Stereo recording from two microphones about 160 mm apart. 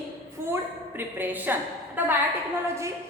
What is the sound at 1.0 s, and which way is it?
A woman's voice, 10° right (ahead or behind).